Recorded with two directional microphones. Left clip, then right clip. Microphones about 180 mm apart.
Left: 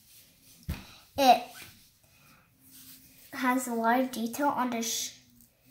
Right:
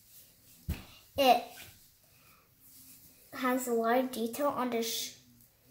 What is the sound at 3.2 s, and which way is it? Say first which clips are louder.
Speech: left 2 dB; 10° right (ahead or behind).